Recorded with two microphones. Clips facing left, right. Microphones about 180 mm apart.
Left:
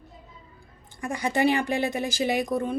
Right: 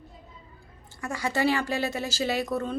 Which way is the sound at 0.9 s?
20° left (ahead or behind).